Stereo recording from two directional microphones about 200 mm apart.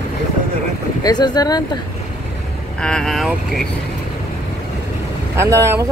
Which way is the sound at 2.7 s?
5° left (ahead or behind).